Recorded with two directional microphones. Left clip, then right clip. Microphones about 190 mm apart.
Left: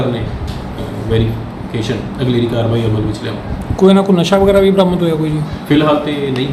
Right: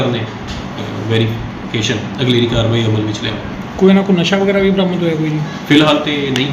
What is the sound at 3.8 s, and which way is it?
A man's voice, 15° left (ahead or behind).